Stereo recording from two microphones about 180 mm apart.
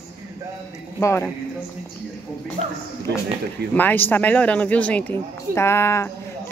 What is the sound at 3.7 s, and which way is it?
Speech, 10° left (ahead or behind).